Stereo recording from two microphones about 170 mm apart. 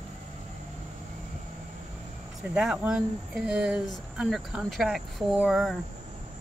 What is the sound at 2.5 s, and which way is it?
Speech, 5° right (ahead or behind).